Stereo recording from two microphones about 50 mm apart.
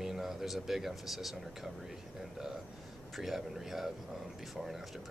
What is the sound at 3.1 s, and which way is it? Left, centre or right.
Speech, centre.